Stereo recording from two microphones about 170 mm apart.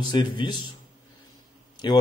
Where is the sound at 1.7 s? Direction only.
25° left (ahead or behind).